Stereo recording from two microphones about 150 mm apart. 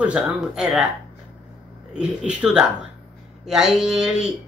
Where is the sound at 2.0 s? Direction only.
5° right (ahead or behind).